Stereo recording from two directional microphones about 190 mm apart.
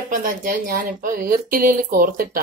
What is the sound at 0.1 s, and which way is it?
Speech, 45° right (ahead or behind).